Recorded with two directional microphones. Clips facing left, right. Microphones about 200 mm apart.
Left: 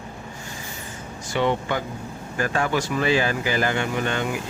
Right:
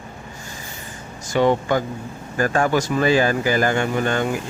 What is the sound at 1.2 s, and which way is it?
Speech, 45° right (ahead or behind).